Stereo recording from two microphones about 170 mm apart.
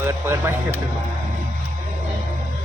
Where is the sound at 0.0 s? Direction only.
15° right (ahead or behind).